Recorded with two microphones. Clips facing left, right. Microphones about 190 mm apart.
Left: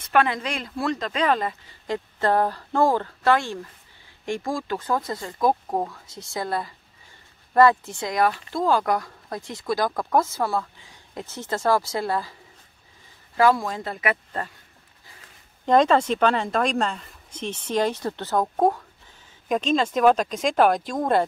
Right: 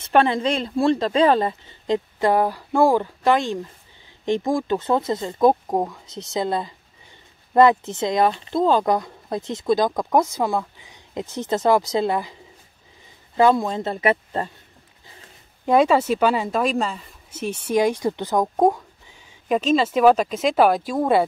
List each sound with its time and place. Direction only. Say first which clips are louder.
0.0 s speech: right 4 dB; 30° right (ahead or behind)
13.4 s speech: right 3 dB; 25° right (ahead or behind)
15.6 s speech: right 1 dB; 10° right (ahead or behind)